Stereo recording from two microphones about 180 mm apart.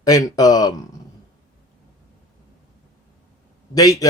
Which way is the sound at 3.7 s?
20° left (ahead or behind).